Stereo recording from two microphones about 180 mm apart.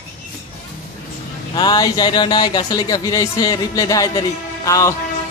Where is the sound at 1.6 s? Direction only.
20° left (ahead or behind).